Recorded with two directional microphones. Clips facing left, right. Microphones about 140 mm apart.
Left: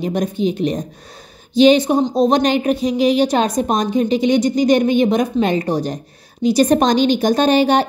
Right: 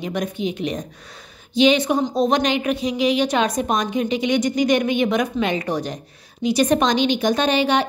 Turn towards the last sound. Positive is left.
turn(degrees=40)  # may be behind; listen again after turning